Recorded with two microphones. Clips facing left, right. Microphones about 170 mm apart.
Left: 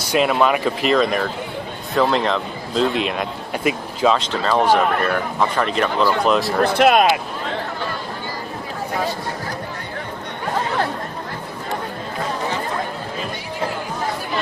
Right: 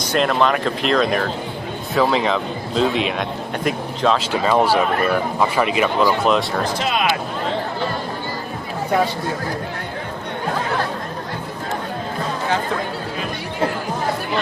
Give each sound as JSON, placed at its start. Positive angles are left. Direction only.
{"t": 0.1, "sound": "speech", "side_deg": 5}
{"t": 4.2, "sound": "speech", "side_deg": -10}
{"t": 6.2, "sound": "speech", "side_deg": 0}
{"t": 6.7, "sound": "speech", "side_deg": 60}